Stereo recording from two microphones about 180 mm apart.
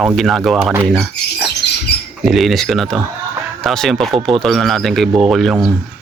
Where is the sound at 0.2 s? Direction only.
Centre (ahead or behind).